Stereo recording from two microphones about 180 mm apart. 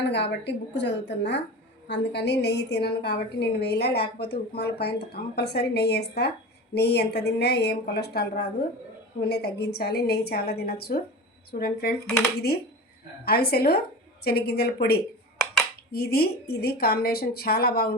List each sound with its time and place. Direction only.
0.1 s a woman's voice: 75° left (ahead or behind)
13.2 s a woman's voice: 60° left (ahead or behind)